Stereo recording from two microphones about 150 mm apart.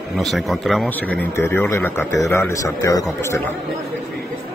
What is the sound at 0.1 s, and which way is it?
Speech, centre (ahead or behind).